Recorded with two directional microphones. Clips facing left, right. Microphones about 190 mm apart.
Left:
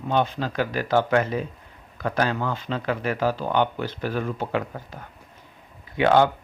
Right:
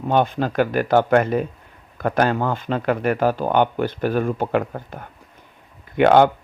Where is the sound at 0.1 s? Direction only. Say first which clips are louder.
Right 4 dB; 50° right (ahead or behind).